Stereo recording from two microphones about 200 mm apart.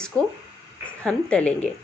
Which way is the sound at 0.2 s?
20° right (ahead or behind).